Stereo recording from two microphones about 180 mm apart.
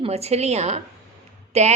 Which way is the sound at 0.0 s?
35° right (ahead or behind).